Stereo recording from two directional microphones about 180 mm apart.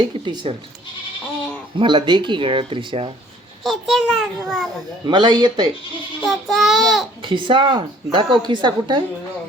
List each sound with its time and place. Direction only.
0.4 s a woman's voice: 30° right (ahead or behind)
1.8 s a woman's voice: 30° right (ahead or behind)
3.6 s a child's voice: centre (ahead or behind)
5.0 s a woman's voice: 25° right (ahead or behind)
6.2 s a child's voice: centre (ahead or behind)
7.2 s a woman's voice: 25° right (ahead or behind)